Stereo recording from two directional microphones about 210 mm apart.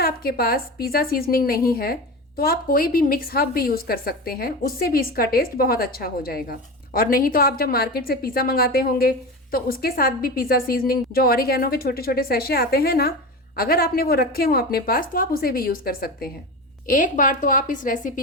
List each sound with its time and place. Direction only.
0.0 s a woman's voice: 45° left (ahead or behind)